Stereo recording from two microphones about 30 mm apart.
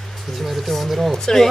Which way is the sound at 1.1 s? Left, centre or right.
Centre.